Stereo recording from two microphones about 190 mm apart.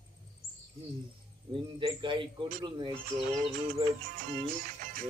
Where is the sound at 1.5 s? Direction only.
25° right (ahead or behind).